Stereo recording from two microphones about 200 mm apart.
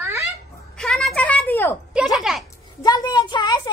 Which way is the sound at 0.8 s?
Centre (ahead or behind).